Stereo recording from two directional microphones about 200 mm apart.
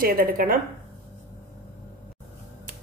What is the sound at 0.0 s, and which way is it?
Speech, 45° right (ahead or behind).